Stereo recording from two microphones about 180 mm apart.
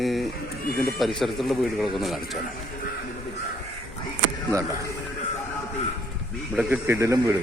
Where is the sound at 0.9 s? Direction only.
Centre (ahead or behind).